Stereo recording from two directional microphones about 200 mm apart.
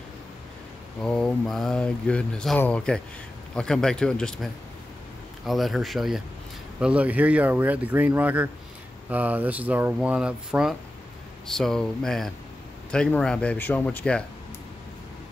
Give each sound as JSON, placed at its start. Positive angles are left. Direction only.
{"t": 1.0, "sound": "speech", "side_deg": 5}